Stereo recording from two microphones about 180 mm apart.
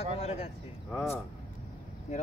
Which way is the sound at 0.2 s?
35° left (ahead or behind).